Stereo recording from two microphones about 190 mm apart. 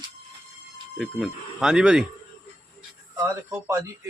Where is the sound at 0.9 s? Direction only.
Centre (ahead or behind).